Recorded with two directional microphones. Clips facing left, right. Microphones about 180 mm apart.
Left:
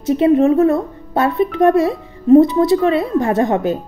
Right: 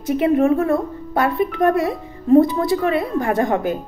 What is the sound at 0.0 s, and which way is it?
A woman's voice, 25° left (ahead or behind).